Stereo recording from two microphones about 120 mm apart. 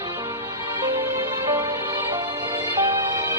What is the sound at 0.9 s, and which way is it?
Music, 20° right (ahead or behind).